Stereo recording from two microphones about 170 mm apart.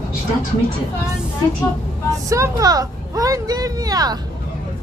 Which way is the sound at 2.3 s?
20° right (ahead or behind).